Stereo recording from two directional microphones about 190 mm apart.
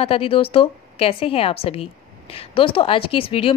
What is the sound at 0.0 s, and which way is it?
A woman's voice, 30° left (ahead or behind).